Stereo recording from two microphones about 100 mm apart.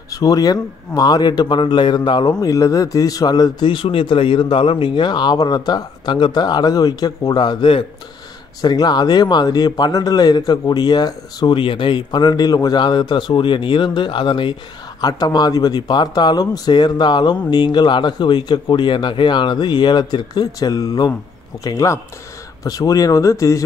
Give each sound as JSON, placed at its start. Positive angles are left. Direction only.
{"t": 0.1, "sound": "speech", "side_deg": 35}
{"t": 8.5, "sound": "speech", "side_deg": 45}
{"t": 11.5, "sound": "speech", "side_deg": 55}
{"t": 15.0, "sound": "speech", "side_deg": 40}